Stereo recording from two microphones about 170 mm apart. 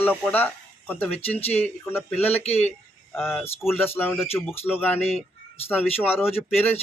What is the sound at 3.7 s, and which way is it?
Speech, 10° left (ahead or behind).